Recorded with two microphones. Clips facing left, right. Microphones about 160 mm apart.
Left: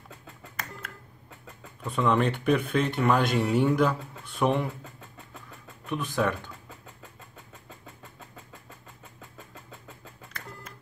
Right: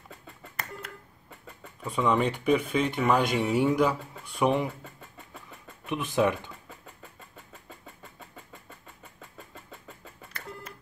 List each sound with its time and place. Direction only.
1.6 s speech: 5° right (ahead or behind)
5.9 s speech: 15° right (ahead or behind)
9.2 s beep: centre (ahead or behind)